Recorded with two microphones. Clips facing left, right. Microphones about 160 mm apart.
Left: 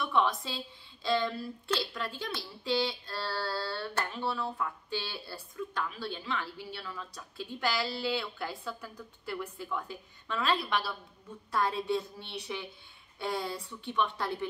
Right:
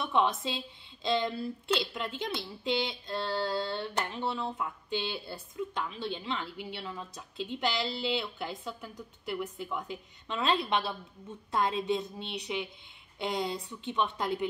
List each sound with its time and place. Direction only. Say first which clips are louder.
0.0 s speech: right 1 dB; 25° right (ahead or behind)